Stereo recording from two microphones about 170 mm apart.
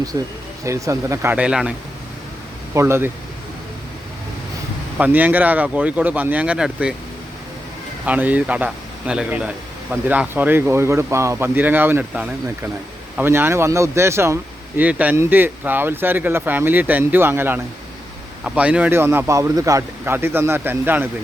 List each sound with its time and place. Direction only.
0.1 s speech: 20° right (ahead or behind)
2.7 s speech: 15° right (ahead or behind)
4.9 s speech: 10° right (ahead or behind)
8.0 s speech: 10° right (ahead or behind)